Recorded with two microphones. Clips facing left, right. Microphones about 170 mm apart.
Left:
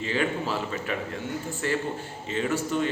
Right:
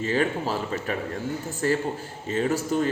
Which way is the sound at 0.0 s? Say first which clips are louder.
Right 3 dB; 40° right (ahead or behind).